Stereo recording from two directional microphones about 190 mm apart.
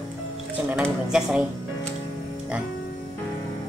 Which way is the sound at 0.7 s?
5° right (ahead or behind).